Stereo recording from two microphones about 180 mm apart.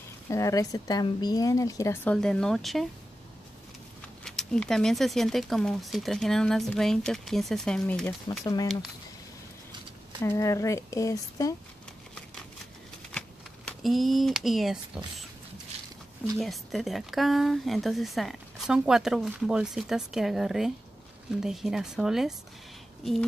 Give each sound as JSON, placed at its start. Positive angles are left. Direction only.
{"t": 0.3, "sound": "a woman's voice", "side_deg": 15}
{"t": 4.2, "sound": "speech", "side_deg": 5}
{"t": 10.2, "sound": "a woman's voice", "side_deg": 15}
{"t": 13.7, "sound": "speech", "side_deg": 0}
{"t": 16.3, "sound": "speech", "side_deg": 0}